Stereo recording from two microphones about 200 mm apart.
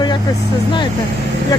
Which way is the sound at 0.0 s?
20° left (ahead or behind).